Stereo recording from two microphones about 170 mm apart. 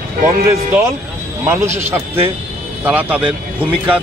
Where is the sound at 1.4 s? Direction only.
15° right (ahead or behind).